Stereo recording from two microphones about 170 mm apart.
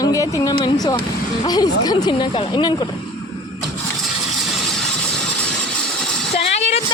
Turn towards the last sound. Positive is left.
turn(degrees=40)  # may be behind; listen again after turning